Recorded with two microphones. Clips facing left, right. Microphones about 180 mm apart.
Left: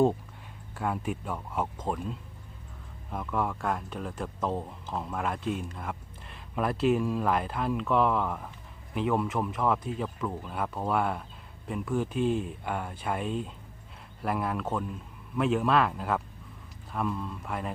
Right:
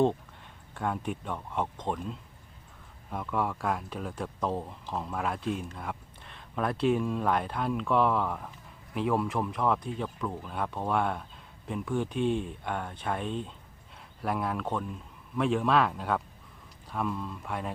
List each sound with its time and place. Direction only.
0.7 s a man's voice: 5° left (ahead or behind)